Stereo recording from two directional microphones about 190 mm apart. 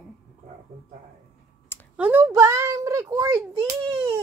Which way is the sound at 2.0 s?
10° right (ahead or behind).